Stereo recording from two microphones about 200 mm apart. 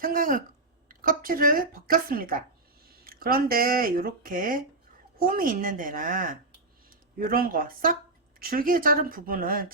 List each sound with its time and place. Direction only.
0.0 s speech: 45° right (ahead or behind)